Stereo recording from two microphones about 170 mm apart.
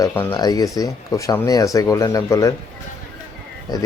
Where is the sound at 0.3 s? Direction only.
20° left (ahead or behind).